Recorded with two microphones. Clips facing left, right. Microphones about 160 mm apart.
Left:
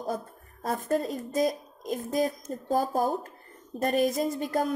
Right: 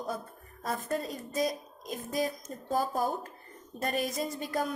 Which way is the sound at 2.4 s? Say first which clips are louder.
Left 4 dB; 30° left (ahead or behind).